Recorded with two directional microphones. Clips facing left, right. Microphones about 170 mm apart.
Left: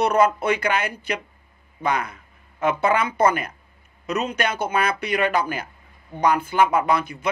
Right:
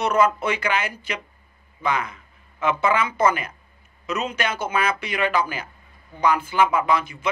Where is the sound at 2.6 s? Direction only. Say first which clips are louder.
Left 1 dB; 40° left (ahead or behind).